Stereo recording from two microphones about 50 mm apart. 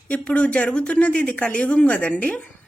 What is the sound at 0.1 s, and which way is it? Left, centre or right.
Speech, left.